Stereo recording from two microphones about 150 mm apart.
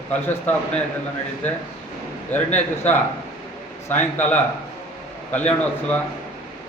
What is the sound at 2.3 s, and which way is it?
A man's voice, 15° left (ahead or behind).